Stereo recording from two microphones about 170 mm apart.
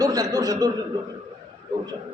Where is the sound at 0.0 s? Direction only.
20° right (ahead or behind).